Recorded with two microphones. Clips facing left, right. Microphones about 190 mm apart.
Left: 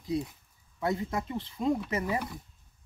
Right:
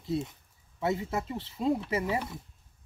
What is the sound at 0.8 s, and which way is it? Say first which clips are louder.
Speech: even; 5° right (ahead or behind).